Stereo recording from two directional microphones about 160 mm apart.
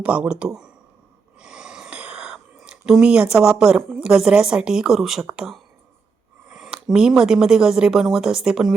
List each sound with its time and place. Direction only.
0.0 s speech: 5° right (ahead or behind)